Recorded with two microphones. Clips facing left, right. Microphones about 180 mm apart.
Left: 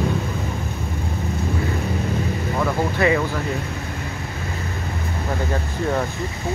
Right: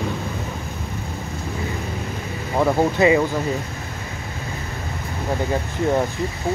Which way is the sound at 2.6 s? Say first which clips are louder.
Right 4 dB; 20° right (ahead or behind).